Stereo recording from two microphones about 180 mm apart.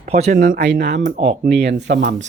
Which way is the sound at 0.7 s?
70° right (ahead or behind).